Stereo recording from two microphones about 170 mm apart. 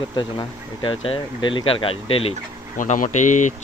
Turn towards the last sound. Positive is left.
turn(degrees=45)  # may be behind; listen again after turning